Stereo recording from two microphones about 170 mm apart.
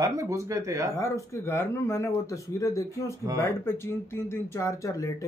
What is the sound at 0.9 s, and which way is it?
Speech, 15° left (ahead or behind).